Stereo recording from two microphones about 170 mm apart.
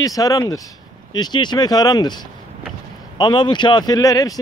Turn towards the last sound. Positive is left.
turn(degrees=20)  # may be behind; listen again after turning